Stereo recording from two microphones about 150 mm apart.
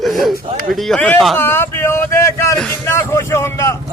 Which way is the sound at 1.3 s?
15° left (ahead or behind).